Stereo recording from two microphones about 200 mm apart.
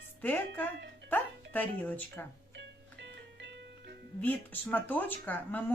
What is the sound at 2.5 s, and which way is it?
Music, 60° right (ahead or behind).